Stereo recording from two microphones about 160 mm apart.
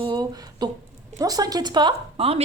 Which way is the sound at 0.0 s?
25° right (ahead or behind).